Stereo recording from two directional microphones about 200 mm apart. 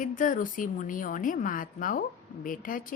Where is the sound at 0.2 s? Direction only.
40° left (ahead or behind).